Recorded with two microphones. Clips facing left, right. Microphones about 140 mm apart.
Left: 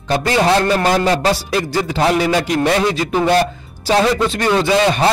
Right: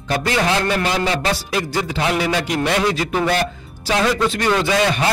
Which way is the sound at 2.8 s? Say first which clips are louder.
Left 3 dB; 25° left (ahead or behind).